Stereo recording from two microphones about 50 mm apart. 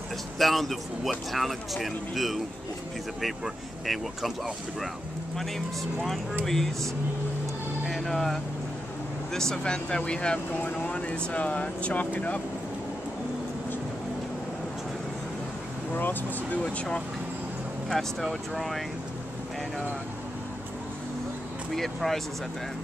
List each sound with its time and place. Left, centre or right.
0.4 s speech: centre
6.4 s speech: centre
7.9 s vehicle: centre
9.3 s speech: centre; by 12.4 s left
15.9 s speech: left
18.2 s speech: centre
21.7 s speech: centre